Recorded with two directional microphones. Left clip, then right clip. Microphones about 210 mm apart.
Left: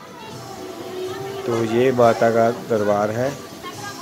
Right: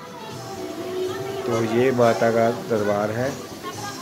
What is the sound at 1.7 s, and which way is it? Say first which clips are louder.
Speech: left 3 dB; 15° left (ahead or behind).